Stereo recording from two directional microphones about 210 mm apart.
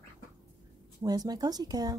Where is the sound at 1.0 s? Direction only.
20° right (ahead or behind).